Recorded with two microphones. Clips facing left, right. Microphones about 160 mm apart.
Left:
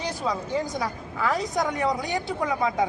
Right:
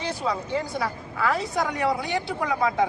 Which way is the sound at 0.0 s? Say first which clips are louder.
Right 1 dB; 15° left (ahead or behind).